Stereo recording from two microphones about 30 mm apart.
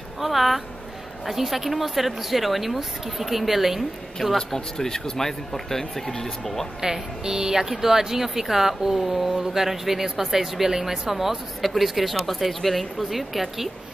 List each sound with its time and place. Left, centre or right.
0.2 s speech: centre
4.6 s speech: centre
6.8 s speech: centre